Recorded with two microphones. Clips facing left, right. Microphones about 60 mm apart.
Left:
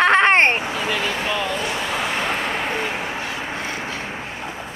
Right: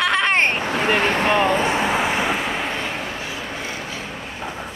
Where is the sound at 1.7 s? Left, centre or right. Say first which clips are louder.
Right 4 dB; right.